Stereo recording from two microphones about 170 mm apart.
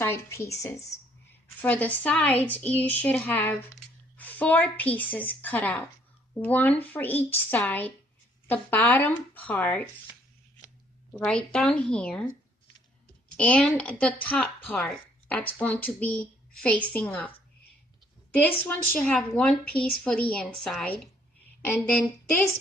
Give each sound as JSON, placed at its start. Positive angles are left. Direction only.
{"t": 0.0, "sound": "speech", "side_deg": 15}
{"t": 11.1, "sound": "a woman's voice", "side_deg": 5}
{"t": 13.3, "sound": "a woman's voice", "side_deg": 5}
{"t": 18.3, "sound": "speech", "side_deg": 10}